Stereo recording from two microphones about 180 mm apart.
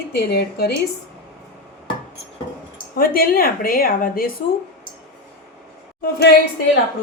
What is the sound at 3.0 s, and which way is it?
A woman's voice, 55° left (ahead or behind).